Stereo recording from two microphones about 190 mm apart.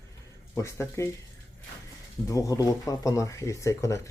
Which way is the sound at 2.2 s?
15° left (ahead or behind).